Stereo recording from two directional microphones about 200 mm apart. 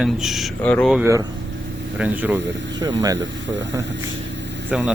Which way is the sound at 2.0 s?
10° right (ahead or behind).